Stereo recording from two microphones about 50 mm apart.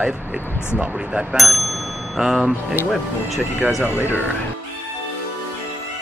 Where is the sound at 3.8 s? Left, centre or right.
Right.